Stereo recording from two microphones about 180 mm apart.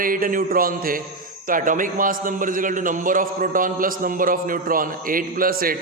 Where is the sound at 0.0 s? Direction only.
50° right (ahead or behind).